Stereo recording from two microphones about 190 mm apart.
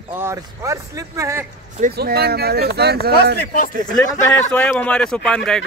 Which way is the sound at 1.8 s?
55° right (ahead or behind).